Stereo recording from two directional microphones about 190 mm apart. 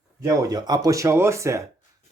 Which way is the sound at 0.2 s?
20° right (ahead or behind).